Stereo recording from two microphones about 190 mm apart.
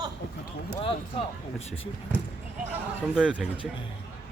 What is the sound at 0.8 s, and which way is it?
Speech, 30° left (ahead or behind).